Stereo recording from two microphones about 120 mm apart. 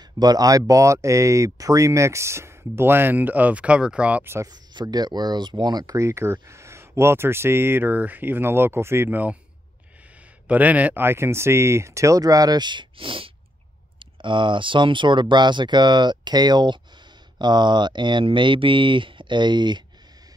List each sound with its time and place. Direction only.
0.2 s speech: 35° right (ahead or behind)
4.5 s speech: 35° right (ahead or behind); by 9.4 s 15° right (ahead or behind)
10.5 s speech: 15° right (ahead or behind); by 19.8 s 40° right (ahead or behind)